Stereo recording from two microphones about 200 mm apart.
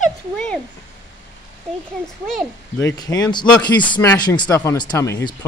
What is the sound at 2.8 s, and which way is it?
Speech, 20° left (ahead or behind).